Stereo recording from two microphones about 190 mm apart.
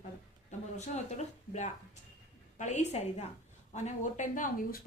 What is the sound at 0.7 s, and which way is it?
A woman's voice, 35° left (ahead or behind).